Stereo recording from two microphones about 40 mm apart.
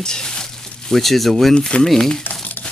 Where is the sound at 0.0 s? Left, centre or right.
Centre.